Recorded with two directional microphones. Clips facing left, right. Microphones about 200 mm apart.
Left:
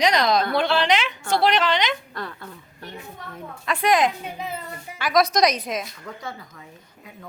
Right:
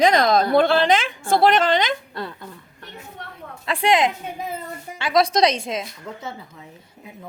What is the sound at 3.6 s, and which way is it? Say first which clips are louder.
A woman's voice: right 1 dB; 30° right (ahead or behind).